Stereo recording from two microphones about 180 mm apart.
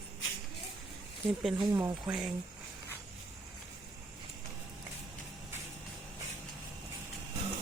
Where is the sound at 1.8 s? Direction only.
15° right (ahead or behind).